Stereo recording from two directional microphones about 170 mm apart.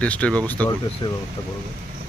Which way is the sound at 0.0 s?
10° left (ahead or behind).